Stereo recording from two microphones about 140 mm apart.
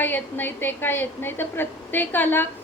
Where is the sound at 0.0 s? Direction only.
15° left (ahead or behind).